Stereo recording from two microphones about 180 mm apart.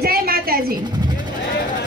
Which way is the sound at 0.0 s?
55° right (ahead or behind).